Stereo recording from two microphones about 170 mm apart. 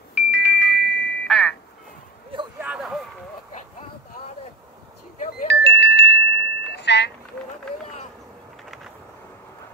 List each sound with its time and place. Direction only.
0.1 s music: 10° right (ahead or behind)
2.6 s a sound: 10° right (ahead or behind)
5.5 s wind chime: 80° left